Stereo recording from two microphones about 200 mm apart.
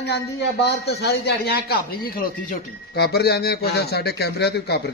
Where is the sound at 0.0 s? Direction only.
55° left (ahead or behind).